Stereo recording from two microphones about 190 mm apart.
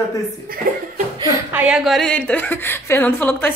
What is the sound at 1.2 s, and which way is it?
A woman's voice, 10° right (ahead or behind).